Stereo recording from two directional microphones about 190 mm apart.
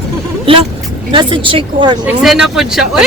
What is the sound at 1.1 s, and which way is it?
Speech, 25° right (ahead or behind).